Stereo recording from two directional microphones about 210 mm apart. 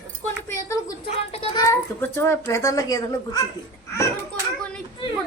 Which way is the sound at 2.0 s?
10° left (ahead or behind).